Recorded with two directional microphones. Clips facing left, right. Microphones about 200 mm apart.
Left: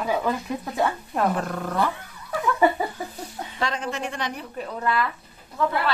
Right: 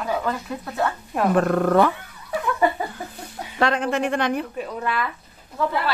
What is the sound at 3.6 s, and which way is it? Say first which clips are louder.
Speech: right 7 dB; 60° right (ahead or behind).